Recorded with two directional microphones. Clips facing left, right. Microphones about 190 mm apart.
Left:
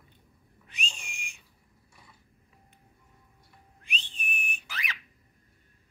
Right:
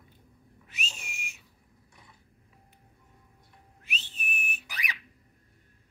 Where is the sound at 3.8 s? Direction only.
5° right (ahead or behind).